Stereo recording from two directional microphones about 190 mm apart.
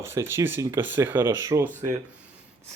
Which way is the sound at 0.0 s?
15° right (ahead or behind).